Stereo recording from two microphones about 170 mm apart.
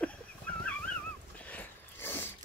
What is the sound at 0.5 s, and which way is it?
Dog, 10° left (ahead or behind).